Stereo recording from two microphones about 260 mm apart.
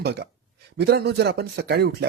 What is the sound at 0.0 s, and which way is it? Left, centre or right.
A man's voice, right.